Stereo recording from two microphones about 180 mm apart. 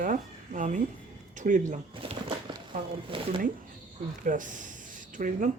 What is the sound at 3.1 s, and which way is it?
Speech, 30° right (ahead or behind).